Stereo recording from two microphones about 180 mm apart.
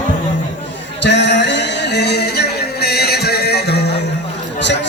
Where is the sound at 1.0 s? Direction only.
75° left (ahead or behind).